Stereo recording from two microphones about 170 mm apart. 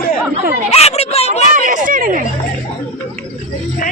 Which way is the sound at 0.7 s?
35° left (ahead or behind).